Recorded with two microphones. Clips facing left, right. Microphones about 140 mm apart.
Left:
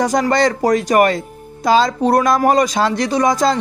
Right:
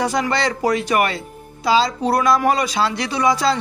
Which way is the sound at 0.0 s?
45° left (ahead or behind).